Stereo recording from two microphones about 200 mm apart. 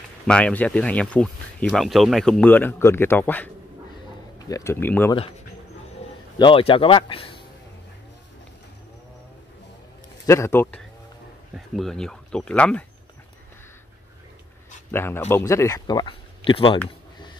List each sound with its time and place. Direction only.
0.3 s speech: 5° left (ahead or behind)
4.5 s speech: 15° left (ahead or behind)
6.3 s speech: 25° left (ahead or behind)
10.2 s speech: 15° left (ahead or behind)
14.9 s speech: 10° left (ahead or behind); by 16.8 s 25° left (ahead or behind)